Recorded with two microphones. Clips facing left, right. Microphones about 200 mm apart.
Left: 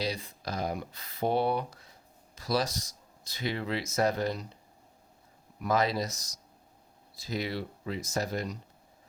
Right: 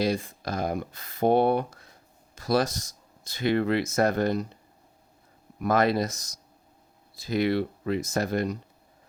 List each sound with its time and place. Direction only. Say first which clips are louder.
0.0 s speech: right 7 dB; 50° right (ahead or behind)
5.5 s speech: right 5 dB; 55° right (ahead or behind)